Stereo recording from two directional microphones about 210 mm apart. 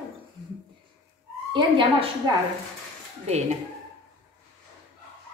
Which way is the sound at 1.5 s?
25° right (ahead or behind).